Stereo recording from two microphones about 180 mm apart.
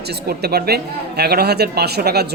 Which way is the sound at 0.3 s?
60° right (ahead or behind).